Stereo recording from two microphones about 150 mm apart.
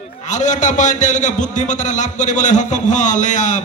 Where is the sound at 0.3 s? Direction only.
55° left (ahead or behind).